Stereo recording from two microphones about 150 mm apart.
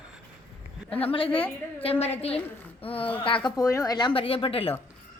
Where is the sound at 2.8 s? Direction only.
40° left (ahead or behind).